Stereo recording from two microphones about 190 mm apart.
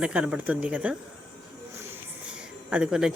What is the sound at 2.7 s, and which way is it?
Speech, 5° right (ahead or behind).